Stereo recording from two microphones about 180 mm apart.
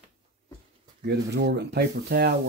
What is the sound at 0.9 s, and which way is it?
Speech, 65° right (ahead or behind).